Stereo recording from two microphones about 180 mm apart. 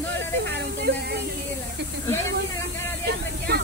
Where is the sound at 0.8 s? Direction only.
65° right (ahead or behind).